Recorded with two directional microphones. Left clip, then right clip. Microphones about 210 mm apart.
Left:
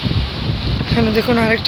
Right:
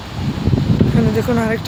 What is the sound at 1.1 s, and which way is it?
Speech, centre (ahead or behind).